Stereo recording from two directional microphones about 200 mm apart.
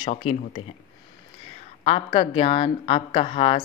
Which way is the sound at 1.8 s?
30° left (ahead or behind).